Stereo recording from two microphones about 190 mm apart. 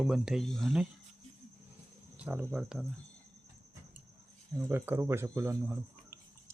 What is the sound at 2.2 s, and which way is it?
Speech, 5° right (ahead or behind).